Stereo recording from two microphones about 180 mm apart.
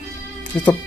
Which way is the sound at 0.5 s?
5° left (ahead or behind).